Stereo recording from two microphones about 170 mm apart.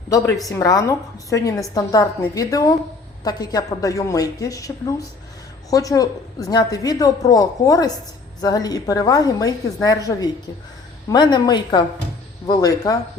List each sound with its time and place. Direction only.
0.4 s a woman's voice: 20° left (ahead or behind)